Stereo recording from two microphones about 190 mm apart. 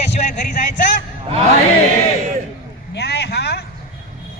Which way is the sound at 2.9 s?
60° left (ahead or behind).